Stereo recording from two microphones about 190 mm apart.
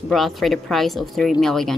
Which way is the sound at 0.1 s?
Centre (ahead or behind).